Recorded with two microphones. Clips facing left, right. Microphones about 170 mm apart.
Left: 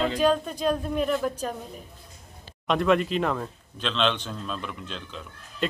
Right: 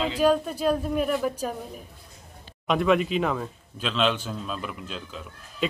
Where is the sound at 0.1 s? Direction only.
10° right (ahead or behind).